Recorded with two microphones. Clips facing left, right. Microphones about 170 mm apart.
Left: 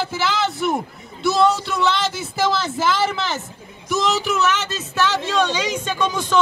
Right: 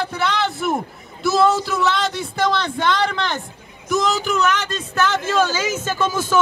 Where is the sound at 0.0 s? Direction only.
5° left (ahead or behind).